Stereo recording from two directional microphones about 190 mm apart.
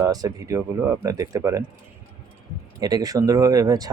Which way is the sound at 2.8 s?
20° right (ahead or behind).